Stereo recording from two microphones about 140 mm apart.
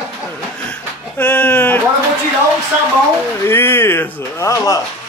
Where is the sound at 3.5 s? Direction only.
15° left (ahead or behind).